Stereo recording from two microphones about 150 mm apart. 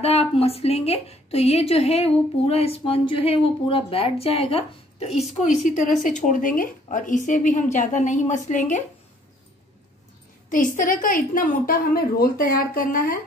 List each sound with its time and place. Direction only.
0.0 s a woman's voice: 40° left (ahead or behind); by 8.8 s 55° left (ahead or behind)
10.8 s a woman's voice: 65° left (ahead or behind)